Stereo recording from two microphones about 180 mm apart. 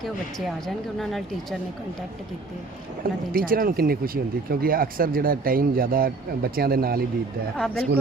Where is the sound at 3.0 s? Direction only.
55° right (ahead or behind).